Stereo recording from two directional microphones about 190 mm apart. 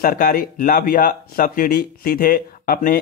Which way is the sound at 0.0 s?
50° left (ahead or behind).